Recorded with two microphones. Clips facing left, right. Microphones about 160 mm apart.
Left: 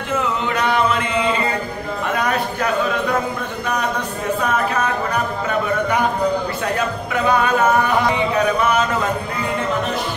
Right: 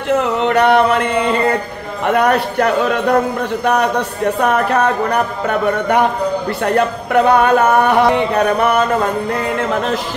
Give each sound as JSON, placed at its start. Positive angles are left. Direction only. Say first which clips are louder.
{"t": 0.1, "sound": "a sound", "louder": "right 7 dB", "side_deg": -65}
{"t": 2.0, "sound": "speech", "louder": "right 8 dB", "side_deg": -60}
{"t": 4.4, "sound": "speech", "louder": "right 6 dB", "side_deg": -65}